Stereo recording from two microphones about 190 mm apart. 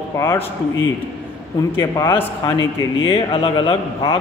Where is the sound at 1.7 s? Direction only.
15° left (ahead or behind).